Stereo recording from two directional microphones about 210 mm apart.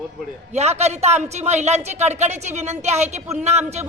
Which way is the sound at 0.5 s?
30° right (ahead or behind).